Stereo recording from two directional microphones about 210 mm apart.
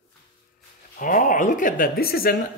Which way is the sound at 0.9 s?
40° left (ahead or behind).